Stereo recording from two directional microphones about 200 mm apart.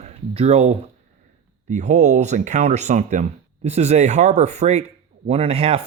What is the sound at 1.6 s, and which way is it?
Speech, 35° right (ahead or behind).